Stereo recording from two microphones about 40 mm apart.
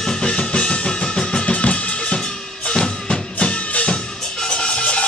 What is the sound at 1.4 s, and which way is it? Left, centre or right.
Drum, left.